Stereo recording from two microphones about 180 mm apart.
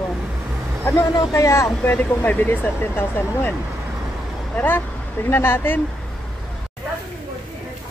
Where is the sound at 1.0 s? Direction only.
20° left (ahead or behind).